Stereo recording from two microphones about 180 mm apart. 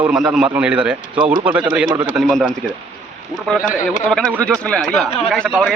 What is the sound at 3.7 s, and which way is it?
Speech, 45° left (ahead or behind).